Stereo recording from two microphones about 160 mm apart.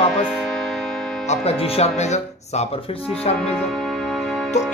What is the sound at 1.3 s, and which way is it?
Speech, 40° left (ahead or behind).